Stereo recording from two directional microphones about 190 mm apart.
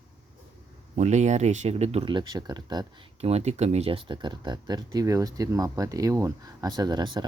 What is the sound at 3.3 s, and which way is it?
Speech, 35° right (ahead or behind).